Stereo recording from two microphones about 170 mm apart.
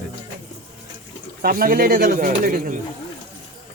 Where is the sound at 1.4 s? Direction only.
60° right (ahead or behind).